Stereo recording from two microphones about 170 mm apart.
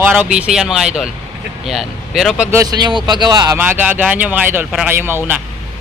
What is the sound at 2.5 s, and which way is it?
Speech, 20° right (ahead or behind).